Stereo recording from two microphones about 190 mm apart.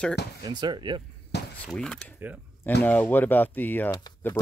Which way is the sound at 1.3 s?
60° left (ahead or behind).